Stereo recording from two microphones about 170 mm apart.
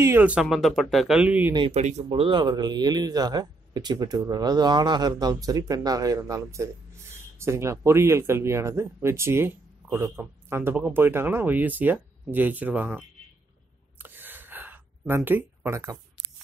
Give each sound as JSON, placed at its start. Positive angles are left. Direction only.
{"t": 0.0, "sound": "speech", "side_deg": -10}
{"t": 1.5, "sound": "speech", "side_deg": -30}
{"t": 1.8, "sound": "speech", "side_deg": -40}
{"t": 13.9, "sound": "a sound", "side_deg": -10}